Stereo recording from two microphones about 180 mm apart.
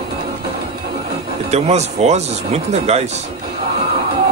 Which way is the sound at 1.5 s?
40° right (ahead or behind).